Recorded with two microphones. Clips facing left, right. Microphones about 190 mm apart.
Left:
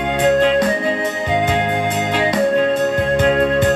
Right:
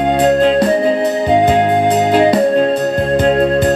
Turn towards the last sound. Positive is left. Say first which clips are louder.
# right 3 dB
turn(degrees=-35)  # may be behind; listen again after turning